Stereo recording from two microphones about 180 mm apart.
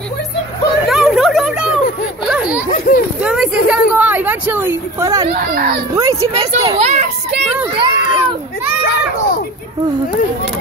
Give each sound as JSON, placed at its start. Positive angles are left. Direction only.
{"t": 0.8, "sound": "a sound", "side_deg": 0}
{"t": 3.2, "sound": "speech", "side_deg": -5}
{"t": 5.3, "sound": "speech", "side_deg": -55}
{"t": 5.9, "sound": "speech", "side_deg": -20}
{"t": 6.5, "sound": "speech", "side_deg": -35}
{"t": 7.7, "sound": "children playing", "side_deg": -30}